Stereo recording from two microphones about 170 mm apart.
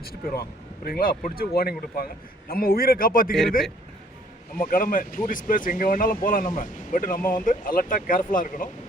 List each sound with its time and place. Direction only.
0.1 s speech: 65° left (ahead or behind)
4.7 s speech: 55° left (ahead or behind)